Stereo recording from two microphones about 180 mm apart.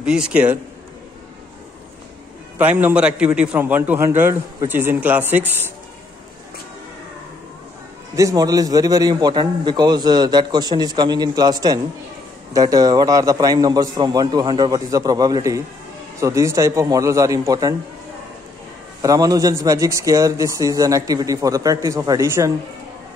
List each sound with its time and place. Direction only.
0.0 s a man's voice: 5° right (ahead or behind)
2.6 s a man's voice: 10° right (ahead or behind)
8.2 s a man's voice: 20° right (ahead or behind)
18.9 s a man's voice: 20° right (ahead or behind)